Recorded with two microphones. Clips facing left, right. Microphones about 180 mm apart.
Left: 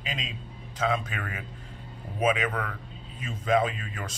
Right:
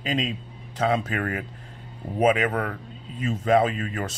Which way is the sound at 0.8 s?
35° right (ahead or behind).